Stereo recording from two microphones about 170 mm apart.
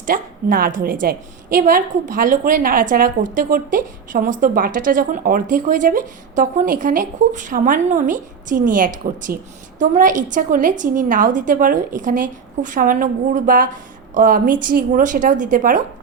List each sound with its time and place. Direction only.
0.0 s a woman's voice: 55° right (ahead or behind)